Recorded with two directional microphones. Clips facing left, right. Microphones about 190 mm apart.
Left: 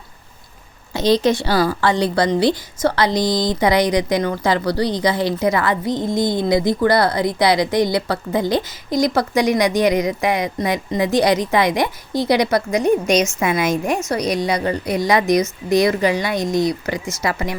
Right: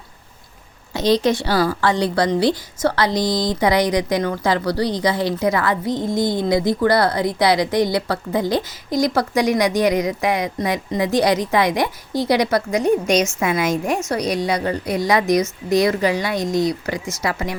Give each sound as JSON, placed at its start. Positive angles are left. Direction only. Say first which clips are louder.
{"t": 0.9, "sound": "a woman's voice", "louder": "left 1 dB", "side_deg": 25}